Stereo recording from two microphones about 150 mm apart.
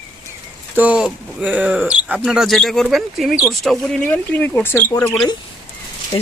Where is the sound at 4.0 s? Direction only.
10° left (ahead or behind).